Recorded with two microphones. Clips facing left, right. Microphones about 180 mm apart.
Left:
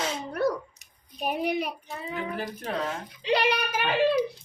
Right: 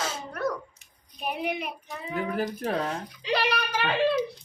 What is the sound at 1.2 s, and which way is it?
Speech, 40° left (ahead or behind).